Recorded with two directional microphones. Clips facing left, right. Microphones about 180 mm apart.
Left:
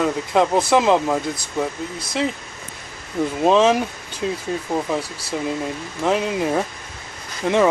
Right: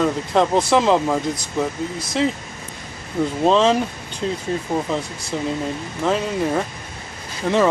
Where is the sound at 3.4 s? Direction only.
10° left (ahead or behind).